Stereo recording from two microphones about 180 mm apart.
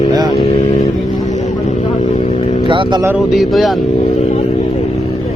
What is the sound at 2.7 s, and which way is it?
Speech, 25° right (ahead or behind).